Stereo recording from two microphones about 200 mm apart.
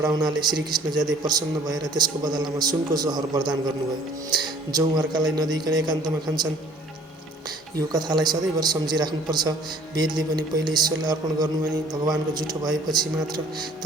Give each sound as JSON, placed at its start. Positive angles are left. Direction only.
{"t": 0.0, "sound": "a man's voice", "side_deg": -20}
{"t": 4.7, "sound": "a man's voice", "side_deg": -20}
{"t": 7.8, "sound": "a man's voice", "side_deg": -20}